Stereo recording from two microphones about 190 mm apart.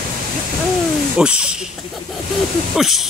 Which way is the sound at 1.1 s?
5° right (ahead or behind).